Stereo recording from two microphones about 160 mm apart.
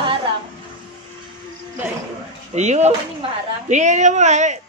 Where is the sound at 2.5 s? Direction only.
45° right (ahead or behind).